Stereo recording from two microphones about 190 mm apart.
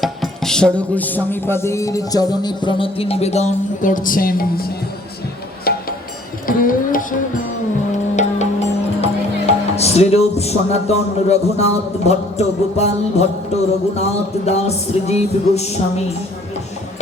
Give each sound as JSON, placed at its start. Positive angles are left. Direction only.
{"t": 0.0, "sound": "music", "side_deg": 0}
{"t": 5.7, "sound": "a sound", "side_deg": 55}
{"t": 6.6, "sound": "music", "side_deg": 45}